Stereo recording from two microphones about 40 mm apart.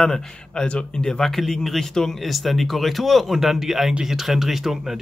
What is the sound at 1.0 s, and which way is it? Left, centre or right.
Speech, centre.